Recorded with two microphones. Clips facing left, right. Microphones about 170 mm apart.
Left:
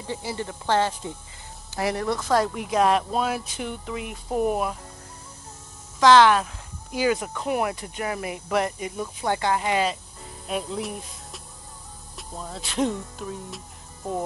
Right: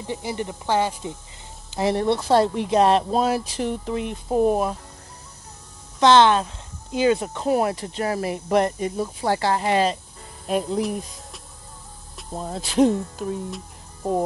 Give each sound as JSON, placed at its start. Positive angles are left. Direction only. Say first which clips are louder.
{"t": 0.0, "sound": "speech", "louder": "right 3 dB", "side_deg": -15}
{"t": 1.7, "sound": "speech", "louder": "right 5 dB", "side_deg": -25}
{"t": 5.9, "sound": "speech", "louder": "right 1 dB", "side_deg": -25}
{"t": 10.8, "sound": "speech", "louder": "right 7 dB", "side_deg": 0}
{"t": 12.4, "sound": "speech", "louder": "right 7 dB", "side_deg": -40}